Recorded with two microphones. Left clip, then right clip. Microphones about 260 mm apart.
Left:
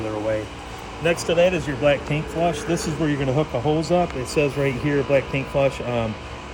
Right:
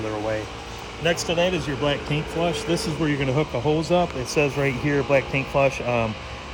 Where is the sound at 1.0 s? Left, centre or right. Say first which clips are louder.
Left 3 dB; centre.